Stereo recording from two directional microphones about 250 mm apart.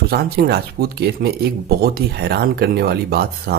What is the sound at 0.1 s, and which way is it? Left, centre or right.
Speech, right.